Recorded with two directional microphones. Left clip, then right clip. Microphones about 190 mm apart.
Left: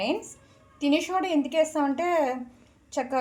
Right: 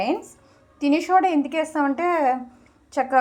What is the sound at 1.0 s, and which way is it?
A woman's voice, 10° right (ahead or behind).